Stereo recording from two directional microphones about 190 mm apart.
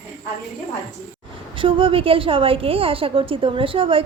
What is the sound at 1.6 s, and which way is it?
A woman's voice, 25° right (ahead or behind).